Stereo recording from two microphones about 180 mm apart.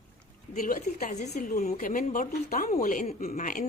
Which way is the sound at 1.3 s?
50° left (ahead or behind).